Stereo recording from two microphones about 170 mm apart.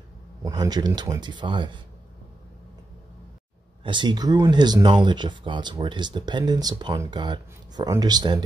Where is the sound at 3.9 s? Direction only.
25° right (ahead or behind).